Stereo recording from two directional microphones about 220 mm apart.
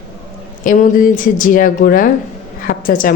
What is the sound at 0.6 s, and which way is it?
A woman's voice, 35° left (ahead or behind).